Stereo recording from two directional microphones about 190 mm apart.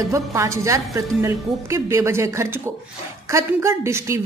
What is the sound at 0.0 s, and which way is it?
A woman's voice, 15° right (ahead or behind).